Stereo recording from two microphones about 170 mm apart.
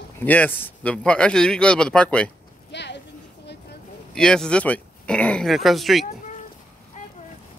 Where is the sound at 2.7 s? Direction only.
90° left.